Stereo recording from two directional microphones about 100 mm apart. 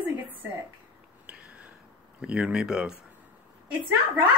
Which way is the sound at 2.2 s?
10° right (ahead or behind).